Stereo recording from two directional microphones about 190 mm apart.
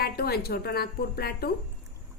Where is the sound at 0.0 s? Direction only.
55° left (ahead or behind).